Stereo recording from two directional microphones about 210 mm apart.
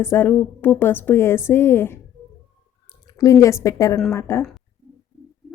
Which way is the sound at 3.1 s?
15° left (ahead or behind).